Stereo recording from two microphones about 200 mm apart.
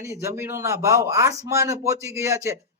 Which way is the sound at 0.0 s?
15° right (ahead or behind).